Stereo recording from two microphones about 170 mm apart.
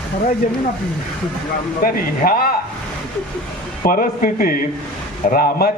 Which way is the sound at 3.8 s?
60° left (ahead or behind).